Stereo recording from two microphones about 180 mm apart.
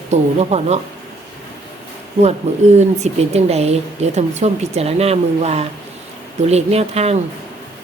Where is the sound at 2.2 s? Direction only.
40° right (ahead or behind).